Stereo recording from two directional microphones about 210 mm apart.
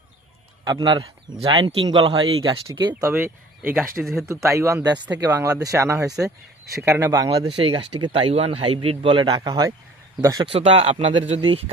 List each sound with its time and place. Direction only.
0.6 s speech: 20° right (ahead or behind)
4.0 s speech: centre (ahead or behind)
4.4 s speech: 15° right (ahead or behind)